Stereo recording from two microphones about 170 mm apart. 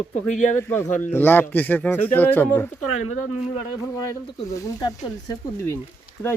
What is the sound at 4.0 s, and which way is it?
Speech, 20° left (ahead or behind).